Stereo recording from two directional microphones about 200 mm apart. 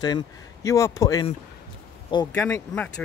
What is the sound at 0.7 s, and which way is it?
Speech, 15° left (ahead or behind).